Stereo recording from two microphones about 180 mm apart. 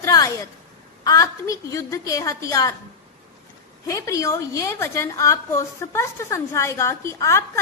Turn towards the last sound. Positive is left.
turn(degrees=15)  # may be behind; listen again after turning